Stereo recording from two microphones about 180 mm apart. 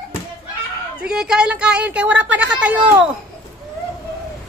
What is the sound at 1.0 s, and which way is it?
Speech, 5° right (ahead or behind).